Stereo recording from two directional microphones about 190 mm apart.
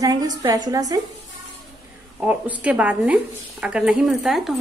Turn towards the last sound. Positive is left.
turn(degrees=0)  # may be behind; listen again after turning